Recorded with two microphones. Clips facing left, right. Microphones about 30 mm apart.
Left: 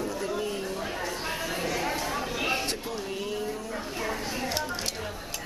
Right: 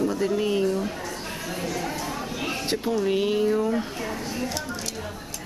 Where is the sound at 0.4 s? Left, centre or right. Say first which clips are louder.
Right 8 dB; right.